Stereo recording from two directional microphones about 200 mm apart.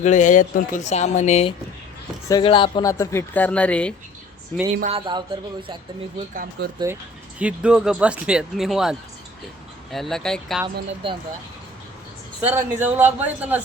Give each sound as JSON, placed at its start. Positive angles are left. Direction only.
{"t": 0.0, "sound": "speech", "side_deg": 40}
{"t": 2.2, "sound": "speech", "side_deg": 20}
{"t": 4.9, "sound": "speech", "side_deg": -25}
{"t": 6.3, "sound": "speech", "side_deg": -45}
{"t": 6.9, "sound": "a man's voice", "side_deg": -15}
{"t": 11.0, "sound": "speech", "side_deg": -25}
{"t": 12.4, "sound": "a man's voice", "side_deg": -10}